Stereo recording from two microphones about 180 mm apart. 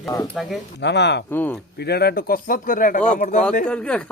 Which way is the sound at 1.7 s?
65° left (ahead or behind).